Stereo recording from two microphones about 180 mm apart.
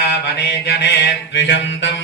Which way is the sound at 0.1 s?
70° left (ahead or behind).